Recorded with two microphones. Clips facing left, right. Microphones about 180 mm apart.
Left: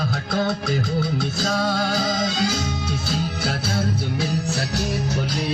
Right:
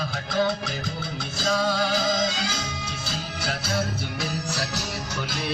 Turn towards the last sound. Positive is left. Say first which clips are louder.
# left 4 dB
turn(degrees=30)  # may be behind; listen again after turning